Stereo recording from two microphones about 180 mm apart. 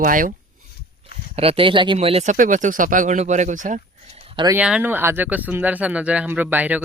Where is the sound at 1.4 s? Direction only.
30° right (ahead or behind).